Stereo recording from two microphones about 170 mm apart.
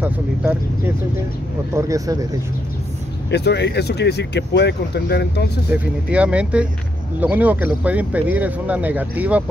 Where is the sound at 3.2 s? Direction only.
85° left.